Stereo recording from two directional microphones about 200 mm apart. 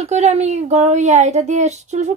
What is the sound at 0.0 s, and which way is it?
Speech, 35° right (ahead or behind).